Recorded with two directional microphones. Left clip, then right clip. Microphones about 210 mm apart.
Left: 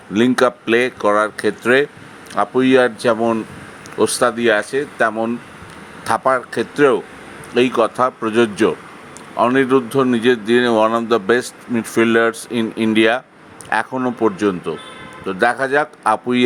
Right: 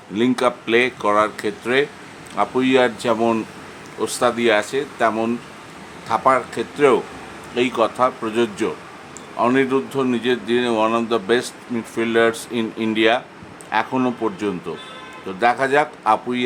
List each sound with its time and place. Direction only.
0.1 s speech: 25° left (ahead or behind)